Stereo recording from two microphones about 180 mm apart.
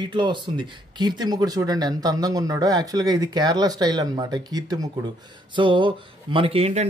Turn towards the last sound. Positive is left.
turn(degrees=-35)  # may be behind; listen again after turning